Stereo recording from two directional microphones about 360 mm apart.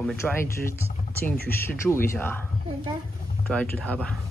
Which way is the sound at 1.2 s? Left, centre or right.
Left.